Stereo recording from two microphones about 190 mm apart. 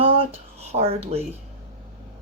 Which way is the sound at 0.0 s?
30° right (ahead or behind).